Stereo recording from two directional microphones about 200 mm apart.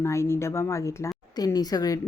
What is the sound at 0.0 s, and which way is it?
A woman's voice, 15° left (ahead or behind).